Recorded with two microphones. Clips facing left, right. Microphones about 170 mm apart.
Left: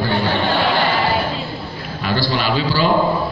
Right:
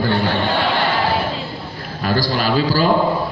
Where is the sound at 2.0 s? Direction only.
40° right (ahead or behind).